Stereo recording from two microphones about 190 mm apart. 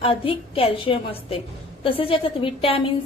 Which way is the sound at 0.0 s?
30° left (ahead or behind).